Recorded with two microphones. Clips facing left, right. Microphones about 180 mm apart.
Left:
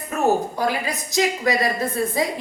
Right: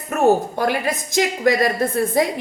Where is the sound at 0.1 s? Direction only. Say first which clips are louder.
Right 4 dB; 55° right (ahead or behind).